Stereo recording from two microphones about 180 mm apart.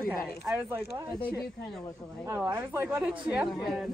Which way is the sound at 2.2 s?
15° right (ahead or behind).